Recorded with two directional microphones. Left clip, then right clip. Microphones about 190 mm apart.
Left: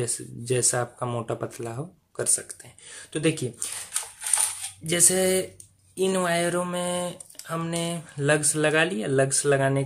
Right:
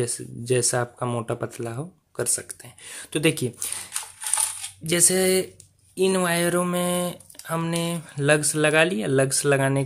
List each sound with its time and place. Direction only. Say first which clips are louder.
0.0 s speech: right 3 dB; 20° right (ahead or behind)
4.8 s speech: right 2 dB; 25° right (ahead or behind)